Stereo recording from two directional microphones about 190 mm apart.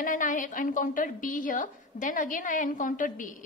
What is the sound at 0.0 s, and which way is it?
Speech, 45° left (ahead or behind).